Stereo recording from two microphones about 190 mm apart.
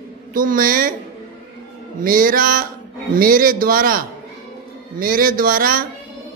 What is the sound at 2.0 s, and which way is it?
A man's voice, 45° right (ahead or behind).